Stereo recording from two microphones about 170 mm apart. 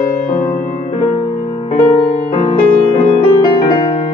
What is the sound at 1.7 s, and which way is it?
Music, 30° left (ahead or behind).